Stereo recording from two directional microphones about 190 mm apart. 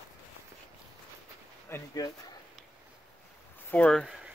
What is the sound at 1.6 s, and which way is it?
Speech, 15° left (ahead or behind).